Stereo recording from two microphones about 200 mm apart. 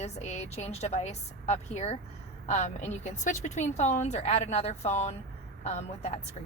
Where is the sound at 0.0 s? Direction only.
35° left (ahead or behind).